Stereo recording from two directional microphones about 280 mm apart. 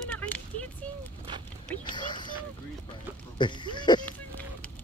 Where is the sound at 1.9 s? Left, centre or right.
Centre.